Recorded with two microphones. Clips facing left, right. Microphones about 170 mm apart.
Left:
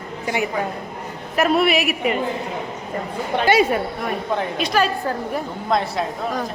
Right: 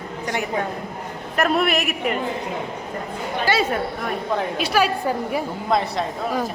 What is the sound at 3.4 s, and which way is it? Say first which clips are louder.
Speech: left 5 dB; 20° left (ahead or behind).